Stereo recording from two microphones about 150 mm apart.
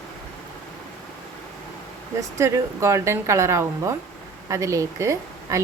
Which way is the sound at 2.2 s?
20° right (ahead or behind).